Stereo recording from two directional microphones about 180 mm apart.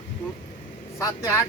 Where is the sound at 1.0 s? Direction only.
15° left (ahead or behind).